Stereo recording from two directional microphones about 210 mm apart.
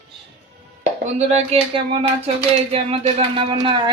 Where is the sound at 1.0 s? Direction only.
35° right (ahead or behind).